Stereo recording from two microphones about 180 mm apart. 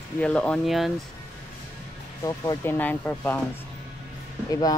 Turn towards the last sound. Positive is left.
turn(degrees=20)  # may be behind; listen again after turning